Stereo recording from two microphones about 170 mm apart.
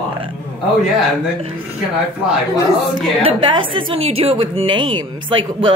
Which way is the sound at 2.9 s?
30° right (ahead or behind).